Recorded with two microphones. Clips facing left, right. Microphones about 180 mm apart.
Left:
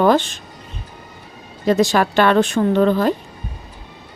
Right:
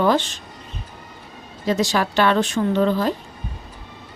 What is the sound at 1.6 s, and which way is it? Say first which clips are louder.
Speech: left 5 dB; 55° left (ahead or behind).